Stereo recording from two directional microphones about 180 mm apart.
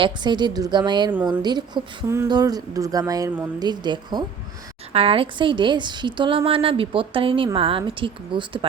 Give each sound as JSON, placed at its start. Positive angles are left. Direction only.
{"t": 0.0, "sound": "a woman's voice", "side_deg": -25}